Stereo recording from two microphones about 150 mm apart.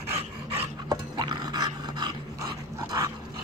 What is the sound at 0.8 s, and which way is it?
Dog, 30° right (ahead or behind).